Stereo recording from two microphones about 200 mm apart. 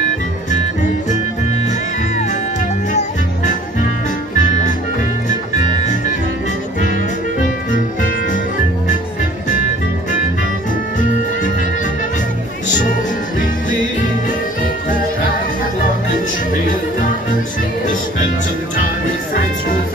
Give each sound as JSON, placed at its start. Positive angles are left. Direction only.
{"t": 2.9, "sound": "music", "side_deg": 40}
{"t": 12.6, "sound": "music", "side_deg": 40}